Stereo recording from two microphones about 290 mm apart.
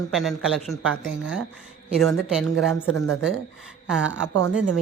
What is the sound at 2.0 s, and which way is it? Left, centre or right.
Speech, centre.